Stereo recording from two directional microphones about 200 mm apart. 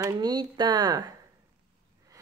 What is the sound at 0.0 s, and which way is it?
A woman's voice, 20° right (ahead or behind).